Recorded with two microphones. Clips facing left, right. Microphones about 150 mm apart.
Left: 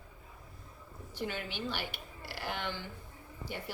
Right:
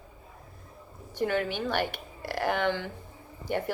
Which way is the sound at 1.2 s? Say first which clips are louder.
Right 10 dB; 55° right (ahead or behind).